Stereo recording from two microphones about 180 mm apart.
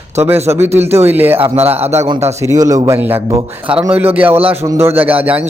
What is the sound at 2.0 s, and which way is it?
A man's voice, 25° right (ahead or behind).